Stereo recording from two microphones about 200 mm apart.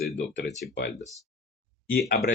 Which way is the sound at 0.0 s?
60° left (ahead or behind).